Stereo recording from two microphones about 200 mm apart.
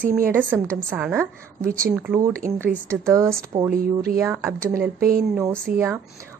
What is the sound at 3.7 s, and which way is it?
Speech, 45° right (ahead or behind).